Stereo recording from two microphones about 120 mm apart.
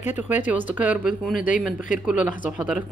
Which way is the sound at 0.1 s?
15° right (ahead or behind).